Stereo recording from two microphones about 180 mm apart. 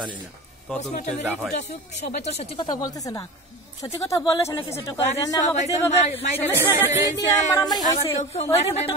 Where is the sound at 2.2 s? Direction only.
35° left (ahead or behind).